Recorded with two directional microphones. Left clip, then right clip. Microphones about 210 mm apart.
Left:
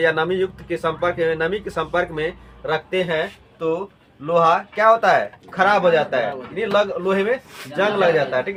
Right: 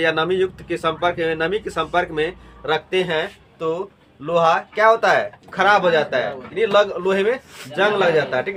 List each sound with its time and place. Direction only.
0.0 s speech: 35° right (ahead or behind)